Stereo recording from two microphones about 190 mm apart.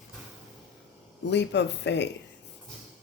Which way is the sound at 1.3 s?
65° left (ahead or behind).